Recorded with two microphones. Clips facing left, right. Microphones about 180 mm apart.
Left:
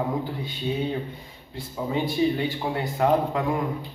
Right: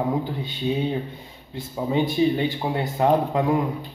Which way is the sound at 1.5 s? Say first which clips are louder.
Right 4 dB; 20° right (ahead or behind).